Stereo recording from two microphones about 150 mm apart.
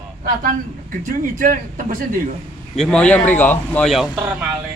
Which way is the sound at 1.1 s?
65° right (ahead or behind).